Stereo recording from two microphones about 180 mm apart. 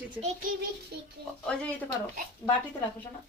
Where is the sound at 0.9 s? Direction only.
65° right (ahead or behind).